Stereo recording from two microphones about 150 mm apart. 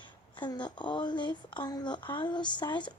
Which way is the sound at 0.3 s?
30° left (ahead or behind).